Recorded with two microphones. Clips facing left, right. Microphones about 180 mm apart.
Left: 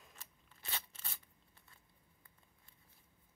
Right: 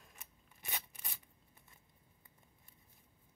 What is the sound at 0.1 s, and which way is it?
Scissors, 15° right (ahead or behind).